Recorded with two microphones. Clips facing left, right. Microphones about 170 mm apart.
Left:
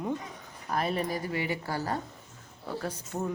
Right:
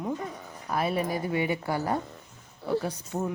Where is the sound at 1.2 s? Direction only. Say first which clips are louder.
Right 4 dB; 20° right (ahead or behind).